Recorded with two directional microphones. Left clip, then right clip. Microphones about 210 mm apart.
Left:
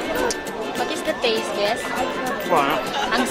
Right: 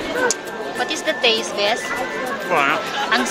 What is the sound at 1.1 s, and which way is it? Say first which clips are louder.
Music: right 5 dB; 10° right (ahead or behind).